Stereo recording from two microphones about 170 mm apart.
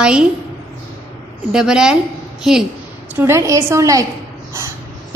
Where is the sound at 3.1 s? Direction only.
15° right (ahead or behind).